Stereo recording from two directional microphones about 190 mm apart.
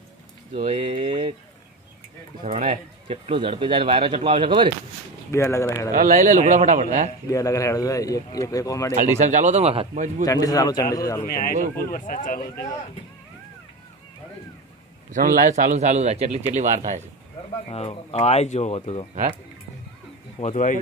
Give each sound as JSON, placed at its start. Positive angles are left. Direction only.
{"t": 1.0, "sound": "a man's voice", "side_deg": -40}
{"t": 2.4, "sound": "a man's voice", "side_deg": -40}
{"t": 3.1, "sound": "speech", "side_deg": -30}
{"t": 5.3, "sound": "speech", "side_deg": 15}
{"t": 6.0, "sound": "a man's voice", "side_deg": -40}
{"t": 7.2, "sound": "speech", "side_deg": 15}
{"t": 8.9, "sound": "a man's voice", "side_deg": -40}
{"t": 10.2, "sound": "a man's voice", "side_deg": 20}
{"t": 11.2, "sound": "speech", "side_deg": 50}
{"t": 15.0, "sound": "a man's voice", "side_deg": -45}
{"t": 17.6, "sound": "speech", "side_deg": 30}
{"t": 20.3, "sound": "speech", "side_deg": 40}